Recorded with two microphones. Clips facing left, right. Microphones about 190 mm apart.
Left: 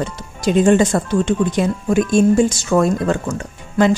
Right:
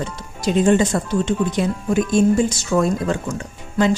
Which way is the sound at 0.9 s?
60° left (ahead or behind).